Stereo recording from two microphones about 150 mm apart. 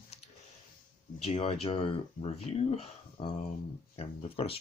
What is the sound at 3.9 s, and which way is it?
Speech, 40° left (ahead or behind).